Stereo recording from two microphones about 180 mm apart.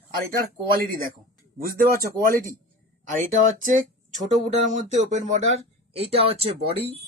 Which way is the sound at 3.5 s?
45° right (ahead or behind).